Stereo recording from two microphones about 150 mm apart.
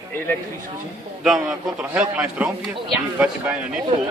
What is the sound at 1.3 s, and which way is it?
A man's voice, centre (ahead or behind).